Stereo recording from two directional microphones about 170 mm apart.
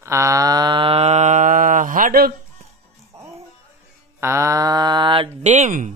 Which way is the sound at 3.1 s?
40° right (ahead or behind).